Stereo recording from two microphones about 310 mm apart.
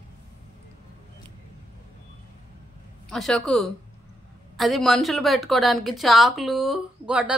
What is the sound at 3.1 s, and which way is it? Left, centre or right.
A woman's voice, centre.